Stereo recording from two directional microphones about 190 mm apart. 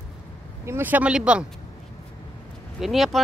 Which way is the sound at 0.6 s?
10° right (ahead or behind).